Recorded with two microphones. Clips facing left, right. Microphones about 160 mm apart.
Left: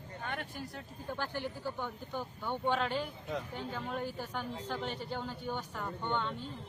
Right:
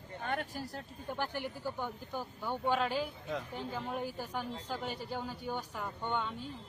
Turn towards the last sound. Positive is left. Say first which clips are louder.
# left 1 dB
turn(degrees=-10)  # may be behind; listen again after turning